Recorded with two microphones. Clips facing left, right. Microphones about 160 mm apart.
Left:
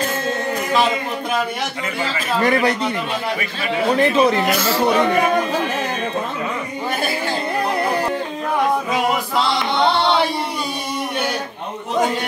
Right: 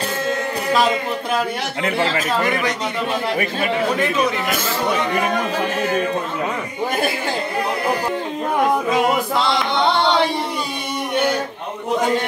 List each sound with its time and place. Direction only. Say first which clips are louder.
4.0 s speech: left 4 dB; 35° left (ahead or behind)
4.5 s speech: left 4 dB; 50° right (ahead or behind)